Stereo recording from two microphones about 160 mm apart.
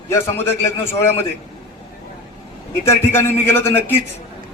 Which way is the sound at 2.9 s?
15° left (ahead or behind).